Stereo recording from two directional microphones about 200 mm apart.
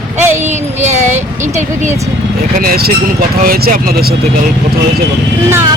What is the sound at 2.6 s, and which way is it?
Speech, 50° right (ahead or behind).